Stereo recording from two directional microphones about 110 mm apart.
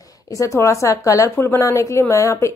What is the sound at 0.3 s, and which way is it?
A woman's voice, 30° left (ahead or behind).